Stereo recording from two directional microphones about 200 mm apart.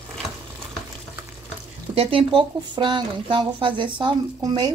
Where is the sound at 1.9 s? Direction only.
25° right (ahead or behind).